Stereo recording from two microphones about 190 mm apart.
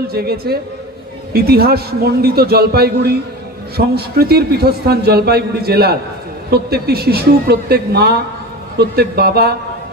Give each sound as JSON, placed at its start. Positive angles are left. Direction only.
{"t": 0.1, "sound": "a man's voice", "side_deg": -55}